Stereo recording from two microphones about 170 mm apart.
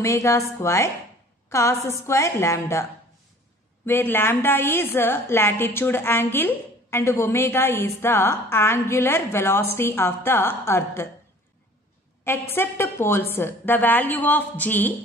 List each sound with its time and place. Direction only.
0.0 s a woman's voice: 15° left (ahead or behind)
12.3 s a woman's voice: 15° left (ahead or behind)